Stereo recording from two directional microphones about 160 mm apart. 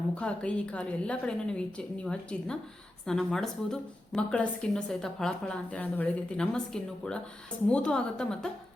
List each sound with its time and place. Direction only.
0.1 s a woman's voice: 5° left (ahead or behind)